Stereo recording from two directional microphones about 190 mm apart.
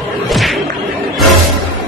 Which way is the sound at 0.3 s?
Centre (ahead or behind).